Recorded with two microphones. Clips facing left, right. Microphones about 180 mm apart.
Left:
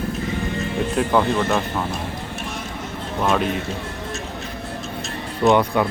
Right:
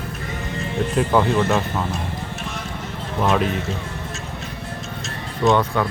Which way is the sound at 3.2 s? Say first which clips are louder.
Right 1 dB; 5° right (ahead or behind).